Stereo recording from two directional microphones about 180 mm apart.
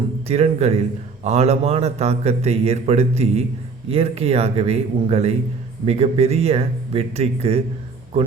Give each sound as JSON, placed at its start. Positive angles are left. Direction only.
{"t": 0.3, "sound": "a man's voice", "side_deg": -35}